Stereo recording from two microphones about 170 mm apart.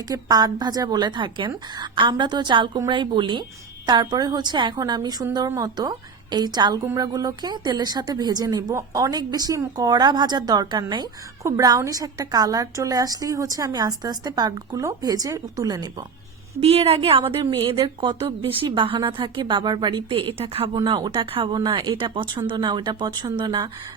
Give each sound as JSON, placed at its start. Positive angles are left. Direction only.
{"t": 0.1, "sound": "speech", "side_deg": -25}
{"t": 16.6, "sound": "a woman's voice", "side_deg": -35}